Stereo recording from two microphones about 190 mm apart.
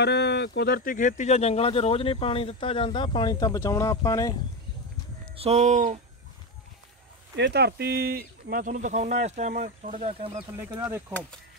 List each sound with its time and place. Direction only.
0.0 s speech: 65° left (ahead or behind); by 4.4 s 20° left (ahead or behind)
5.3 s speech: 30° right (ahead or behind)
7.3 s speech: 60° right (ahead or behind); by 10.4 s 35° right (ahead or behind)
10.8 s speech: 15° right (ahead or behind)